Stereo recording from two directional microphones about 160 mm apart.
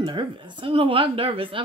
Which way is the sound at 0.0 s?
30° right (ahead or behind).